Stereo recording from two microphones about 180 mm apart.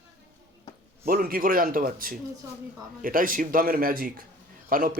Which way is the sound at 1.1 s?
50° right (ahead or behind).